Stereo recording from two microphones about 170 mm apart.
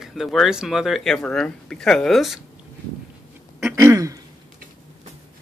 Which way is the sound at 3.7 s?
15° right (ahead or behind).